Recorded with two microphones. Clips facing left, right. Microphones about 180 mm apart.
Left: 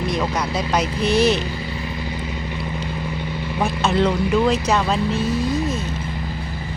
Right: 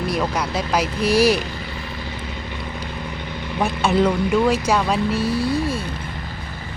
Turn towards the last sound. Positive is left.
turn(degrees=-10)  # may be behind; listen again after turning